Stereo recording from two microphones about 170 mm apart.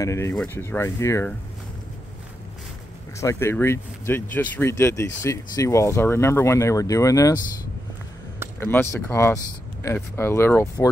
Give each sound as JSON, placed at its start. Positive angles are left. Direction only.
{"t": 0.0, "sound": "speech", "side_deg": 15}
{"t": 3.2, "sound": "speech", "side_deg": 15}
{"t": 8.5, "sound": "speech", "side_deg": 15}